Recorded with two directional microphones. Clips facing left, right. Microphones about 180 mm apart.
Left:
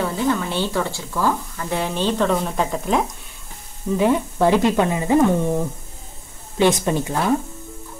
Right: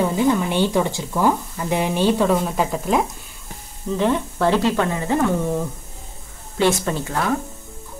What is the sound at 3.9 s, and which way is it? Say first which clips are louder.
Speech: left 2 dB; 10° left (ahead or behind).